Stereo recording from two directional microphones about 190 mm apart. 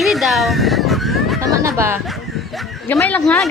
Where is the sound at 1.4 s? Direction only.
15° right (ahead or behind).